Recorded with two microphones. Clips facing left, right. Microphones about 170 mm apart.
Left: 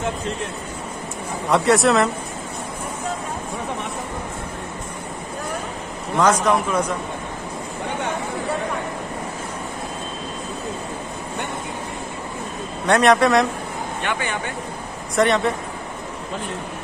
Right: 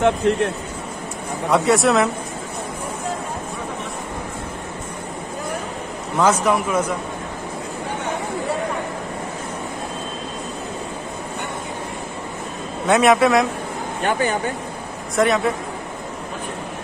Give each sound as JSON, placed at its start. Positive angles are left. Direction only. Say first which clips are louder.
{"t": 0.0, "sound": "speech", "louder": "right 9 dB", "side_deg": -65}
{"t": 1.5, "sound": "a man's voice", "louder": "even", "side_deg": 0}
{"t": 6.1, "sound": "a man's voice", "louder": "even", "side_deg": -10}
{"t": 12.8, "sound": "a man's voice", "louder": "right 1 dB", "side_deg": -5}
{"t": 14.0, "sound": "speech", "louder": "right 7 dB", "side_deg": -40}
{"t": 15.1, "sound": "a man's voice", "louder": "even", "side_deg": 0}